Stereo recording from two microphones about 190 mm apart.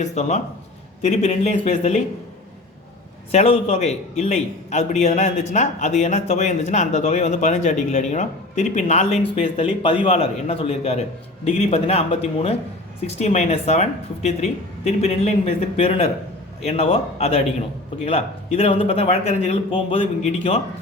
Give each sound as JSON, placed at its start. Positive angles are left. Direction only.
{"t": 0.0, "sound": "a man's voice", "side_deg": 35}
{"t": 3.3, "sound": "a man's voice", "side_deg": 30}